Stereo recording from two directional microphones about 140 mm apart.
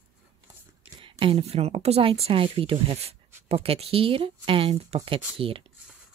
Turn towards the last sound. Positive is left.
turn(degrees=-40)  # may be behind; listen again after turning